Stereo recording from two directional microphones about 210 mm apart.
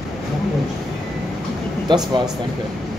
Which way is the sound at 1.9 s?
20° right (ahead or behind).